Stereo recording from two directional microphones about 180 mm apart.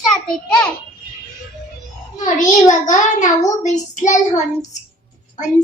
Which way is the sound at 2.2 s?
45° left (ahead or behind).